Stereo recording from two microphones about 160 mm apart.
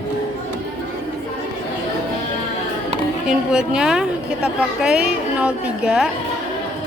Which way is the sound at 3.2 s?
5° right (ahead or behind).